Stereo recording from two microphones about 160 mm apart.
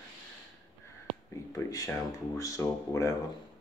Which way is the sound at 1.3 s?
20° left (ahead or behind).